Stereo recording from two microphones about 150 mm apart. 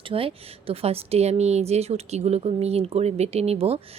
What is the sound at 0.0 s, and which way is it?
Speech, 40° right (ahead or behind).